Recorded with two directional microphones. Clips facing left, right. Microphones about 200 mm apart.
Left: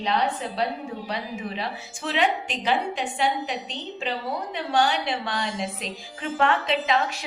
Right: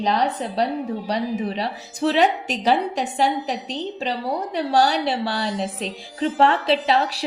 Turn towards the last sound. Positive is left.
turn(degrees=-35)  # may be behind; listen again after turning